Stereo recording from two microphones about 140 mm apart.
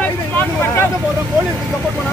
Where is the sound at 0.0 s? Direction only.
15° left (ahead or behind).